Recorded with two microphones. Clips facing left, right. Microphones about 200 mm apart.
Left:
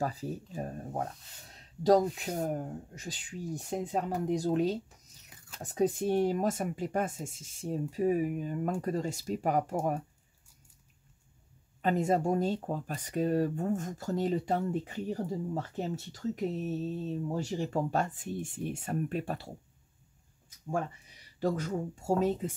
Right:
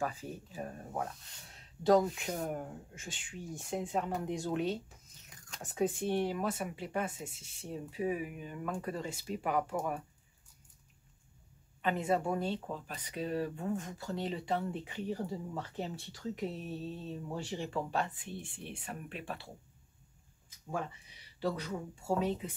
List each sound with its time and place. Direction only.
0.0 s speech: 35° left (ahead or behind)
1.5 s a sound: 40° left (ahead or behind)
2.1 s speech: 40° left (ahead or behind)
11.8 s speech: 40° left (ahead or behind)
21.4 s speech: 45° left (ahead or behind)